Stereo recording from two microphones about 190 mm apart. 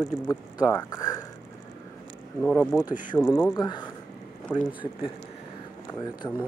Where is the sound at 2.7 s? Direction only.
10° left (ahead or behind).